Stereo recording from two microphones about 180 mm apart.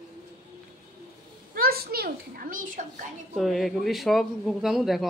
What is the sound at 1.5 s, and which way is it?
A child's voice, 55° right (ahead or behind).